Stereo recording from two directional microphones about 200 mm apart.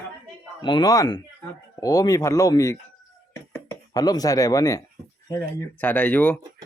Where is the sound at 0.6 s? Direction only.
20° left (ahead or behind).